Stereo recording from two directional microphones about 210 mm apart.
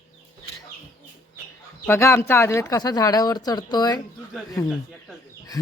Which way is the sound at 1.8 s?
10° left (ahead or behind).